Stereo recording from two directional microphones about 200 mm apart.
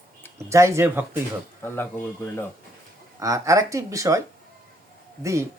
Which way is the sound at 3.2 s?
15° right (ahead or behind).